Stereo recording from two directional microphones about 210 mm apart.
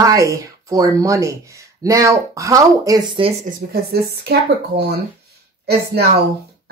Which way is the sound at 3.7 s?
50° right (ahead or behind).